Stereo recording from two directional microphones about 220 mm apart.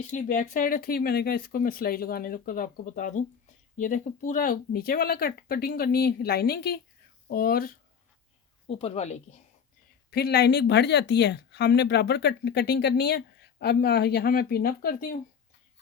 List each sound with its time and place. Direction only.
0.1 s speech: 35° left (ahead or behind)
8.6 s speech: 25° left (ahead or behind)
10.1 s speech: 45° left (ahead or behind)